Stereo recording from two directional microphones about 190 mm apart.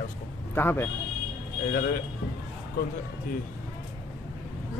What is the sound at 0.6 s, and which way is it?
Speech, 10° left (ahead or behind).